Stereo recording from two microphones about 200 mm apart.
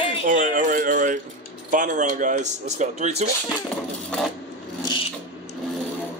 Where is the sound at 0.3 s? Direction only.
40° right (ahead or behind).